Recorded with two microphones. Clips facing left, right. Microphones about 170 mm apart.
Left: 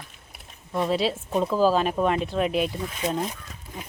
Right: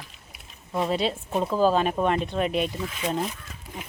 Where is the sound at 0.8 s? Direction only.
Centre (ahead or behind).